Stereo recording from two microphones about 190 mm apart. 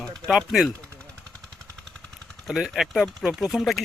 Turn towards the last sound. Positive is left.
turn(degrees=0)  # may be behind; listen again after turning